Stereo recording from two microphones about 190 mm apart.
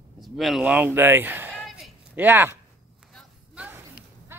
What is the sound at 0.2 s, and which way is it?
Speech, centre (ahead or behind).